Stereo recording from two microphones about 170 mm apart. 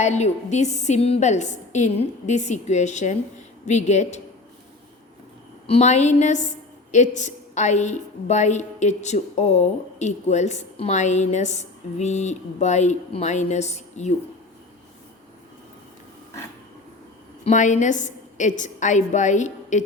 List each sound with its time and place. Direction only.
0.0 s a woman's voice: 40° left (ahead or behind)
5.6 s a woman's voice: 40° left (ahead or behind)
17.4 s a woman's voice: 45° left (ahead or behind)